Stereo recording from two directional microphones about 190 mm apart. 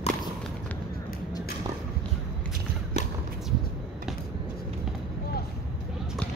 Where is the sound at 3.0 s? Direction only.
35° left (ahead or behind).